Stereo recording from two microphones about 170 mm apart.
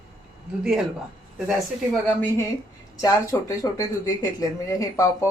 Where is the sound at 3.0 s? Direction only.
20° left (ahead or behind).